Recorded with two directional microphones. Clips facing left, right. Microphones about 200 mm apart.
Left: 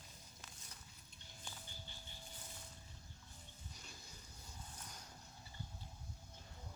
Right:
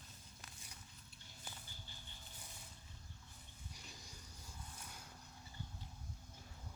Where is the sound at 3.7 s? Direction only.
10° right (ahead or behind).